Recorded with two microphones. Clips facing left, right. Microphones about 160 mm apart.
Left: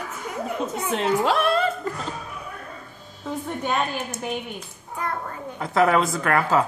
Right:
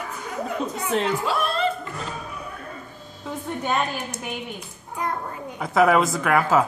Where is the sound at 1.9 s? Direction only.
40° left (ahead or behind).